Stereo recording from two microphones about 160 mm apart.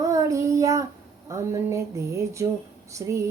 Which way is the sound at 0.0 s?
20° right (ahead or behind).